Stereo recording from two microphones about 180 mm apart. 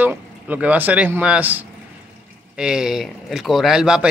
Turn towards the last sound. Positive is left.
turn(degrees=-5)  # may be behind; listen again after turning